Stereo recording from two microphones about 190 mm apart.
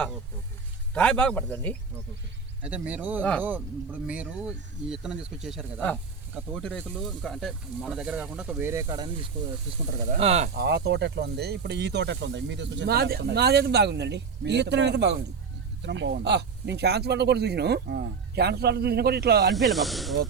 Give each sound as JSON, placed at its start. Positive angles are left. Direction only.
{"t": 0.9, "sound": "speech", "side_deg": 5}
{"t": 2.6, "sound": "speech", "side_deg": -5}
{"t": 10.2, "sound": "speech", "side_deg": -35}
{"t": 10.6, "sound": "speech", "side_deg": -60}
{"t": 19.5, "sound": "speech", "side_deg": 0}